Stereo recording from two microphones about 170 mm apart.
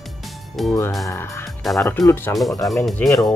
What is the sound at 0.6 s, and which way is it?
Speech, centre (ahead or behind).